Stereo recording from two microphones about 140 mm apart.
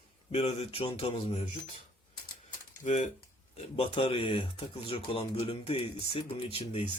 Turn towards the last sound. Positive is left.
turn(degrees=45)  # may be behind; listen again after turning